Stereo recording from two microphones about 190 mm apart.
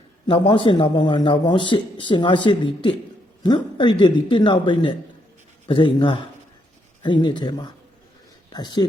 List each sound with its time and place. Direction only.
0.3 s a man's voice: 25° left (ahead or behind)